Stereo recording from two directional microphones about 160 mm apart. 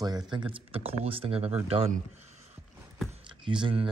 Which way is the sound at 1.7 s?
40° right (ahead or behind).